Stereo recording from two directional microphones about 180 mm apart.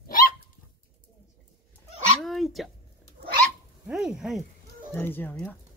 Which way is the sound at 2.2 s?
Centre (ahead or behind).